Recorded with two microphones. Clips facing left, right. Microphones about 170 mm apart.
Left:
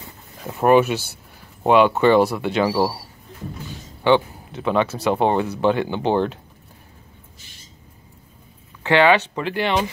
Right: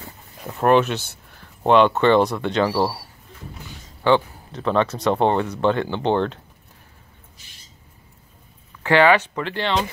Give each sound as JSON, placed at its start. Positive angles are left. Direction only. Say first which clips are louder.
{"t": 0.6, "sound": "speech", "louder": "left 2 dB", "side_deg": 10}
{"t": 4.5, "sound": "speech", "louder": "even", "side_deg": 5}
{"t": 8.8, "sound": "speech", "louder": "even", "side_deg": 20}